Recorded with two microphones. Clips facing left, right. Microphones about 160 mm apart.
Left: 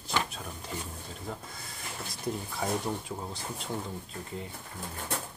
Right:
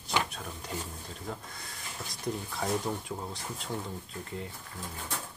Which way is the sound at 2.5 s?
Centre (ahead or behind).